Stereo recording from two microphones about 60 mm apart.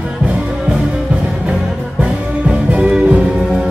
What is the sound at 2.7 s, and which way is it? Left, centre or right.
Music, centre.